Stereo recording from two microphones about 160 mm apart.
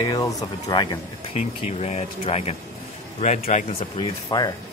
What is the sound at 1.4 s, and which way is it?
Speech, 45° left (ahead or behind).